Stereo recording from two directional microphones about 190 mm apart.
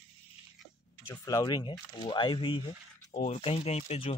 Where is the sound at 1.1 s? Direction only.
20° left (ahead or behind).